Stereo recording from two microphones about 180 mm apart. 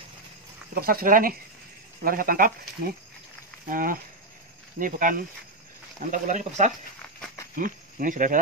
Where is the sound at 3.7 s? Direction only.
50° right (ahead or behind).